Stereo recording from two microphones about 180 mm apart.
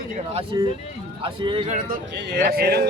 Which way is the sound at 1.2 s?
30° right (ahead or behind).